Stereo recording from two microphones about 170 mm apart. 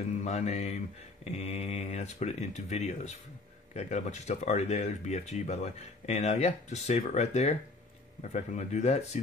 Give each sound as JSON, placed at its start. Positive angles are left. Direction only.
{"t": 0.0, "sound": "speech", "side_deg": 40}